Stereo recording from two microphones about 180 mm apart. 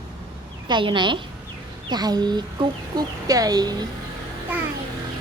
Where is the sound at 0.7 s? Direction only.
25° right (ahead or behind).